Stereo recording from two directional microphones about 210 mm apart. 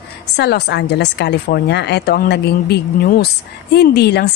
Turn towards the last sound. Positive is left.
turn(degrees=50)  # may be behind; listen again after turning